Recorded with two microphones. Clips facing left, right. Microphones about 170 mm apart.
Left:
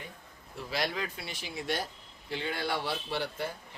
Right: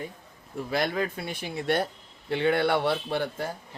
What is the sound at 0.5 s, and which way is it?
Speech, 50° right (ahead or behind).